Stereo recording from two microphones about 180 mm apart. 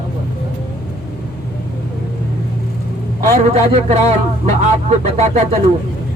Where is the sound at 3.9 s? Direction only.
35° right (ahead or behind).